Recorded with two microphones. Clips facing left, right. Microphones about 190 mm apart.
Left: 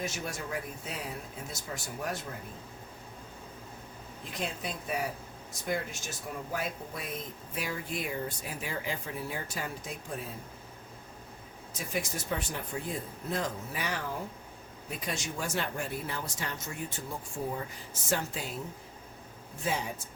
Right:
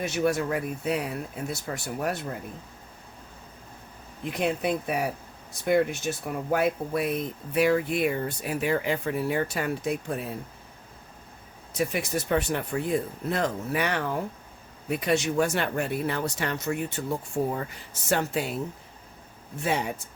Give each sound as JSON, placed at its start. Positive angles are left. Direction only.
{"t": 0.0, "sound": "speech", "side_deg": -65}
{"t": 4.2, "sound": "speech", "side_deg": -65}
{"t": 11.8, "sound": "speech", "side_deg": -65}
{"t": 19.6, "sound": "speech", "side_deg": -65}